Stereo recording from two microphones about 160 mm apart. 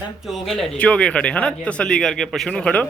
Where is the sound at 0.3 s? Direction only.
Centre (ahead or behind).